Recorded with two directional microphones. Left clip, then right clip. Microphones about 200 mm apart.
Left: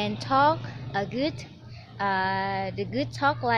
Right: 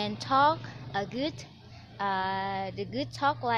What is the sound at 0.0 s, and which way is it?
A woman's voice, 15° right (ahead or behind).